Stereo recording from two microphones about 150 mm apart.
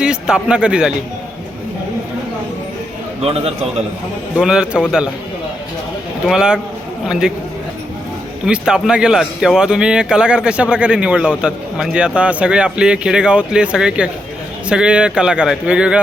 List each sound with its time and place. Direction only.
0.0 s speech: 5° right (ahead or behind)
3.2 s a man's voice: 40° right (ahead or behind)
4.4 s a man's voice: 5° right (ahead or behind)
6.2 s a man's voice: 5° right (ahead or behind)
8.4 s a man's voice: 5° right (ahead or behind)